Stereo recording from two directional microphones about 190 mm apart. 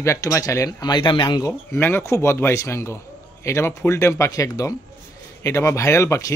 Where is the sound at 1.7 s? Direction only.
10° left (ahead or behind).